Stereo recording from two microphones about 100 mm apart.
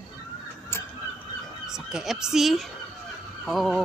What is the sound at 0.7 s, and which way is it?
Honk, 25° left (ahead or behind).